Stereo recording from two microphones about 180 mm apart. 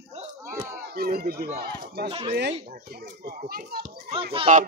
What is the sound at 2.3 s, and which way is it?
Speech, 75° right (ahead or behind).